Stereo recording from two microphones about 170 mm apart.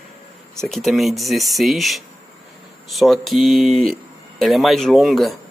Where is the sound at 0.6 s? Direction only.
Centre (ahead or behind).